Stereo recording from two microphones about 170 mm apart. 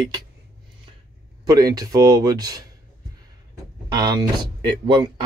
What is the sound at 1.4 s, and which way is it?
Speech, 20° right (ahead or behind).